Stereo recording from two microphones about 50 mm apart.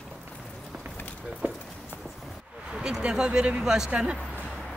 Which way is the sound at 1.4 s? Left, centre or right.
Right.